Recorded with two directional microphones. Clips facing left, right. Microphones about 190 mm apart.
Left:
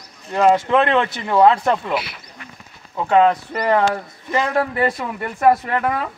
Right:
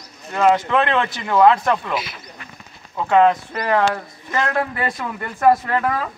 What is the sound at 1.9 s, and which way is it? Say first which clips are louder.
Speech: left 2 dB; 65° left (ahead or behind).